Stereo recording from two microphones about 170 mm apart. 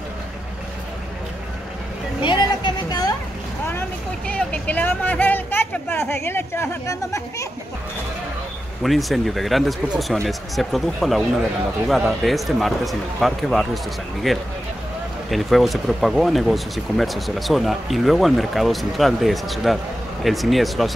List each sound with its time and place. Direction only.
2.2 s a sound: 25° left (ahead or behind)
4.3 s speech: 10° left (ahead or behind)
8.8 s speech: centre (ahead or behind)